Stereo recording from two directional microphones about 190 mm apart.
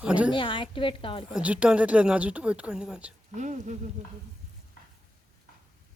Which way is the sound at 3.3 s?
40° right (ahead or behind).